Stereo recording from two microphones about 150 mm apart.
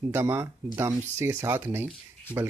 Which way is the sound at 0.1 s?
15° right (ahead or behind).